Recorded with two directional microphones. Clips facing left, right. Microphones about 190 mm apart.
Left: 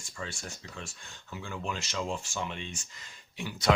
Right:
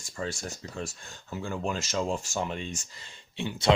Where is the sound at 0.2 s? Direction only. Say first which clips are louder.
Right 6 dB; 40° right (ahead or behind).